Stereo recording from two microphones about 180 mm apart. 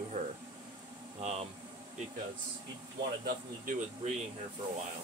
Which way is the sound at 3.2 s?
60° right (ahead or behind).